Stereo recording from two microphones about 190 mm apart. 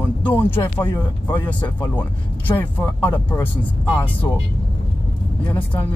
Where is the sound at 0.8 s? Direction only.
20° left (ahead or behind).